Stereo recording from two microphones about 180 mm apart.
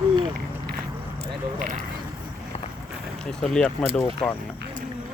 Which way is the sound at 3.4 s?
5° left (ahead or behind).